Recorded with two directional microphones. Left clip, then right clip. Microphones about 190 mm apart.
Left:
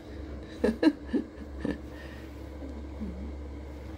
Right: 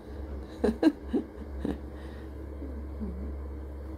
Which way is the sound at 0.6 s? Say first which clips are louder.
Even; centre (ahead or behind).